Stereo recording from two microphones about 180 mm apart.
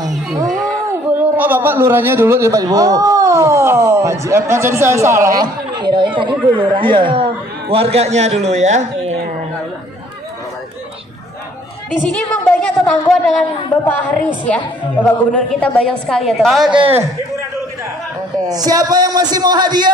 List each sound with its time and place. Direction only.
1.1 s a man's voice: 10° right (ahead or behind); by 9.1 s 40° right (ahead or behind)
12.0 s a woman's voice: 10° left (ahead or behind)
18.4 s a man's voice: 20° right (ahead or behind)